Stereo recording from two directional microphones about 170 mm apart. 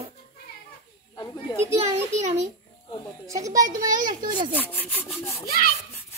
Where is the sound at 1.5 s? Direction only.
25° left (ahead or behind).